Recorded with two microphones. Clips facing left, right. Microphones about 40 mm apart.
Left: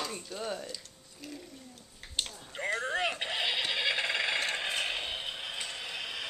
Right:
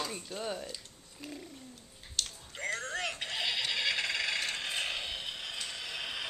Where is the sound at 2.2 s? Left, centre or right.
Left.